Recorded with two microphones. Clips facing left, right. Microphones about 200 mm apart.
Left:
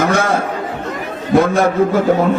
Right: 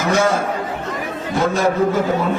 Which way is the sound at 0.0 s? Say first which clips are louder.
Left 2 dB; 55° left (ahead or behind).